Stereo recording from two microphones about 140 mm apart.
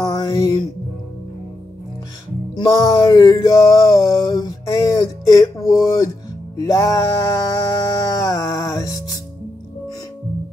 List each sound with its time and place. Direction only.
0.2 s music: 20° left (ahead or behind)
2.5 s music: 25° left (ahead or behind)